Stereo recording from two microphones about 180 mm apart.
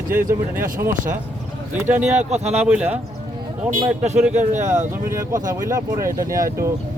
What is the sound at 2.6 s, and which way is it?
Speech, 10° right (ahead or behind).